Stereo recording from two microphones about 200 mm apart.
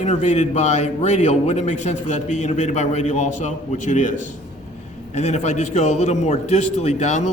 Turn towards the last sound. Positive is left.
turn(degrees=35)  # may be behind; listen again after turning